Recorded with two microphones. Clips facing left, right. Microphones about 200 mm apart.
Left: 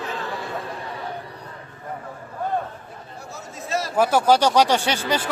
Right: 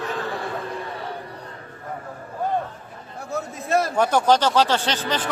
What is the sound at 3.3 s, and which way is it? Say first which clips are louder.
Chatter: right 6 dB; 55° right (ahead or behind).